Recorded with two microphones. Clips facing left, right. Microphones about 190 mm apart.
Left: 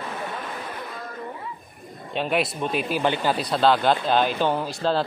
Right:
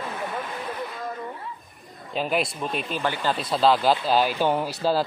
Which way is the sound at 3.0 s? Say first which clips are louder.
Left 2 dB; 15° left (ahead or behind).